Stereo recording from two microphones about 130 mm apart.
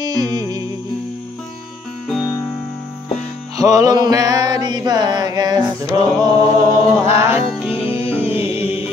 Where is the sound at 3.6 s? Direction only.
25° right (ahead or behind).